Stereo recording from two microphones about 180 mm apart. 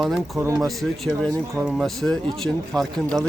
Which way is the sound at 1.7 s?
Centre (ahead or behind).